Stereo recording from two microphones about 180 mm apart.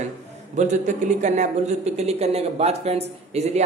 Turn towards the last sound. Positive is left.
turn(degrees=-35)  # may be behind; listen again after turning